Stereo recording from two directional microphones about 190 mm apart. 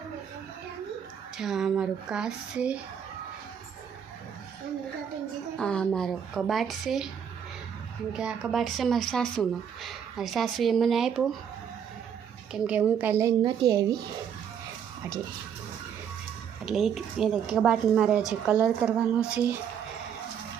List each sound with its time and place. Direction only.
1.4 s speech: centre (ahead or behind)
5.5 s speech: 5° left (ahead or behind)
8.1 s speech: 5° right (ahead or behind)
12.5 s a woman's voice: 5° right (ahead or behind)
16.6 s speech: centre (ahead or behind)